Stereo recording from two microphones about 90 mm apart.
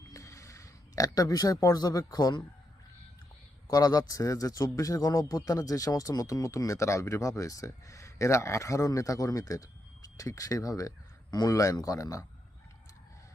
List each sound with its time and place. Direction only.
0.1 s speech: 35° left (ahead or behind)
3.7 s speech: 45° left (ahead or behind)